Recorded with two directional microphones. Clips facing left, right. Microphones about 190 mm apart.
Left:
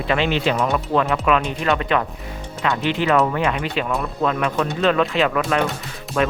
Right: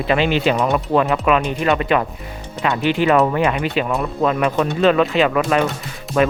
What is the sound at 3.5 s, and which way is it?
Speech, 5° right (ahead or behind).